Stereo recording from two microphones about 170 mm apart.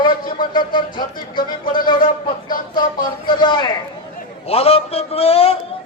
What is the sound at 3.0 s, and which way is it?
Speech, 25° left (ahead or behind).